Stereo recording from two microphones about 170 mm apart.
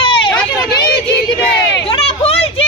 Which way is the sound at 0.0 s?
30° left (ahead or behind).